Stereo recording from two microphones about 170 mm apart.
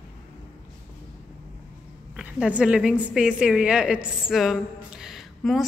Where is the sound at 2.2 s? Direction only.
5° right (ahead or behind).